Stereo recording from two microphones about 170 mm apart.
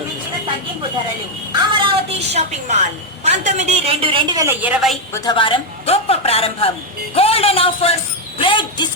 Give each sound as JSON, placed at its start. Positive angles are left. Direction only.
{"t": 1.7, "sound": "a woman's voice", "side_deg": -35}
{"t": 4.4, "sound": "a woman's voice", "side_deg": -10}
{"t": 5.1, "sound": "a woman's voice", "side_deg": 25}